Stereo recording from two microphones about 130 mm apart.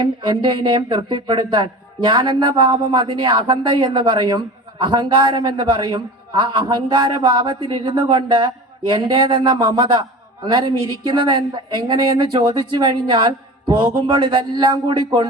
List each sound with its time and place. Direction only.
0.0 s a man's voice: 35° right (ahead or behind)